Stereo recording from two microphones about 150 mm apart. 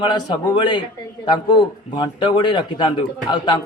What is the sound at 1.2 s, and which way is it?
A man's voice, 30° left (ahead or behind).